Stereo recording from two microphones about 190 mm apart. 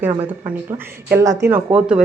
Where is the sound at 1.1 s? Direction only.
15° right (ahead or behind).